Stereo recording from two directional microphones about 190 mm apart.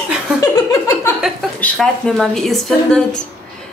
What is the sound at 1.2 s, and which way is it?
A woman's voice, centre (ahead or behind).